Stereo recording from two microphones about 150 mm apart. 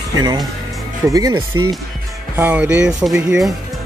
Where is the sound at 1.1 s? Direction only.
20° right (ahead or behind); by 3.5 s 5° right (ahead or behind).